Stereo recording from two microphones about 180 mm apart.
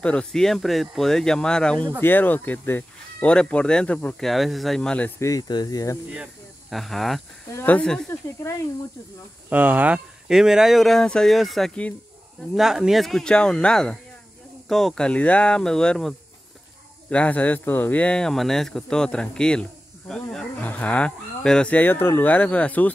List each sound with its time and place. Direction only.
0.0 s speech: 5° left (ahead or behind)
6.7 s speech: centre (ahead or behind)
8.1 s speech: 15° left (ahead or behind)
9.5 s speech: 10° right (ahead or behind); by 22.8 s 10° left (ahead or behind)